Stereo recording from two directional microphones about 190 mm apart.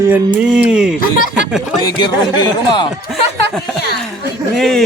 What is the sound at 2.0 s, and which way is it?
Speech, 20° left (ahead or behind).